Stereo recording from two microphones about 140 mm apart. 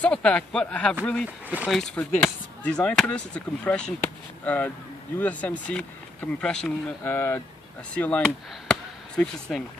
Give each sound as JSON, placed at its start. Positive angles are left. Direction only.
{"t": 0.0, "sound": "speech", "side_deg": 5}
{"t": 8.6, "sound": "chop", "side_deg": 5}